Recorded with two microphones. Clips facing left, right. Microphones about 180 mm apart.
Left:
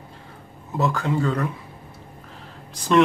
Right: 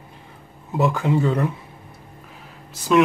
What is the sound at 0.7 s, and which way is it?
Speech, 20° right (ahead or behind).